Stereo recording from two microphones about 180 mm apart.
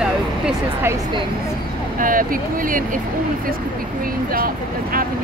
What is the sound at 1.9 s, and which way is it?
Speech, 50° right (ahead or behind).